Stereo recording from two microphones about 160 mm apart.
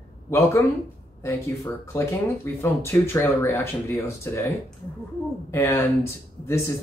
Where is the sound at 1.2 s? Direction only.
15° left (ahead or behind).